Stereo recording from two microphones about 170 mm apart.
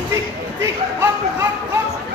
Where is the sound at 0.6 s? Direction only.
15° right (ahead or behind).